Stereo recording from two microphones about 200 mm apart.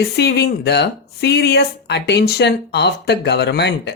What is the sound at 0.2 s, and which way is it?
Speech, 55° left (ahead or behind).